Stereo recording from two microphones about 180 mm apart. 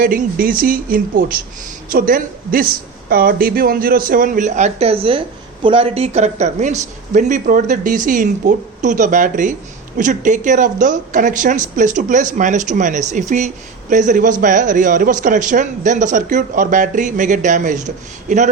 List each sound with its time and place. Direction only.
0.0 s a man's voice: 50° right (ahead or behind)